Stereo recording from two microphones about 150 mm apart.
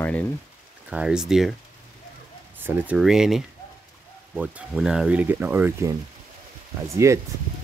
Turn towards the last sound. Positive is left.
turn(degrees=-20)  # may be behind; listen again after turning